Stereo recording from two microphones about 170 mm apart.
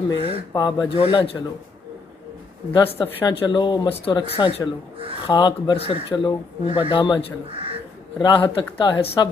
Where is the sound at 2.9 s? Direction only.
30° left (ahead or behind).